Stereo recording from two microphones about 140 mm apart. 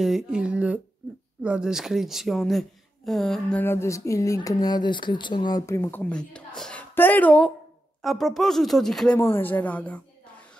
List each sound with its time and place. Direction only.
0.0 s speech: 5° right (ahead or behind)